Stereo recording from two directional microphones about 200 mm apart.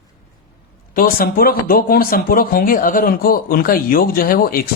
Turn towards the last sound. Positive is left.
turn(degrees=45)  # may be behind; listen again after turning